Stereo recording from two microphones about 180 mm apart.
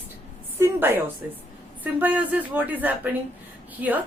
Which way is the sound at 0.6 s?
10° right (ahead or behind).